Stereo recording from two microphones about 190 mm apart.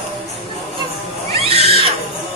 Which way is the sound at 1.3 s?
30° right (ahead or behind).